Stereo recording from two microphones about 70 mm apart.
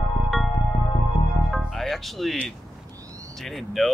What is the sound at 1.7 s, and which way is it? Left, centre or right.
Speech, centre.